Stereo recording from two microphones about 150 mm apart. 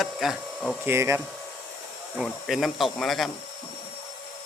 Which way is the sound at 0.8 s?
15° right (ahead or behind).